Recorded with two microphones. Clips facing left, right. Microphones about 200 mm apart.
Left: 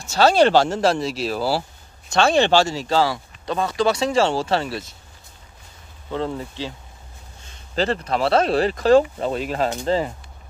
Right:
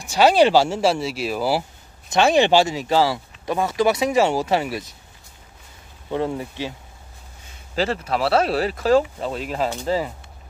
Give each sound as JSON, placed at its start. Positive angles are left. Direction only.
{"t": 0.0, "sound": "speech", "side_deg": -15}
{"t": 4.2, "sound": "speech", "side_deg": -5}
{"t": 6.1, "sound": "speech", "side_deg": -15}
{"t": 7.7, "sound": "speech", "side_deg": -5}